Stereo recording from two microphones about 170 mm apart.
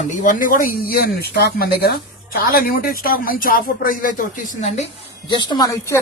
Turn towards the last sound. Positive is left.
turn(degrees=20)  # may be behind; listen again after turning